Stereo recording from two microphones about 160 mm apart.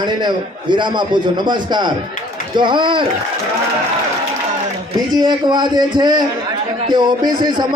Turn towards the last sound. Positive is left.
turn(degrees=-25)  # may be behind; listen again after turning